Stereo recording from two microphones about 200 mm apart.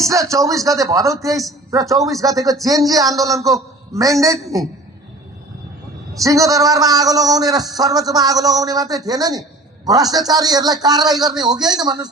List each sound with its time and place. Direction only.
0.0 s a man's voice: 15° right (ahead or behind)
6.2 s a man's voice: 15° right (ahead or behind)